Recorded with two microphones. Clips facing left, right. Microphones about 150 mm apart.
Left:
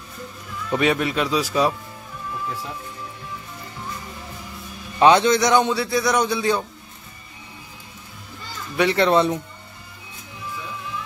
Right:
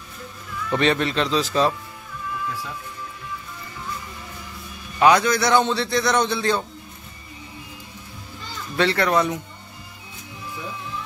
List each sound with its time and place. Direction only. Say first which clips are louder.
0.7 s a man's voice: even; 10° left (ahead or behind)
4.9 s a man's voice: left 2 dB; 25° left (ahead or behind)
8.7 s speech: left 2 dB; 20° left (ahead or behind)